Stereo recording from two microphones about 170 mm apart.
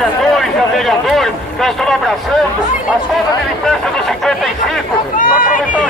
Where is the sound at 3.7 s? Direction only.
Centre (ahead or behind).